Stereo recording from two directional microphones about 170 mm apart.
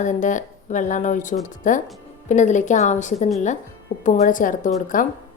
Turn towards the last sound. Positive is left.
turn(degrees=50)  # may be behind; listen again after turning